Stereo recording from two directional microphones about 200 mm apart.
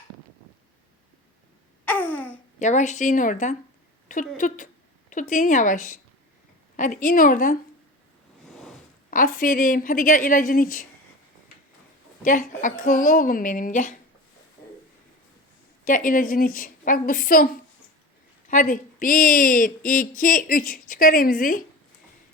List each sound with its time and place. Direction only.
1.8 s a sound: 10° left (ahead or behind)
2.6 s a woman's voice: 35° left (ahead or behind)
4.4 s a woman's voice: 40° left (ahead or behind)
6.7 s a woman's voice: 40° left (ahead or behind)
9.0 s a woman's voice: 40° left (ahead or behind)
12.2 s a woman's voice: 40° left (ahead or behind)
15.8 s a woman's voice: 40° left (ahead or behind)